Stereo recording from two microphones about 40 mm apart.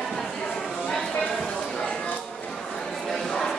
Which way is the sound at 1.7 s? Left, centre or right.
Left.